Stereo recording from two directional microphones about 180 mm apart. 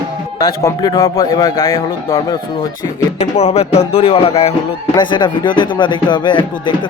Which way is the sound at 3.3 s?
35° left (ahead or behind).